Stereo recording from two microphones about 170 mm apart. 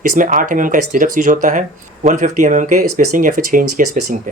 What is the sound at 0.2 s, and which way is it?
Speech, 50° right (ahead or behind).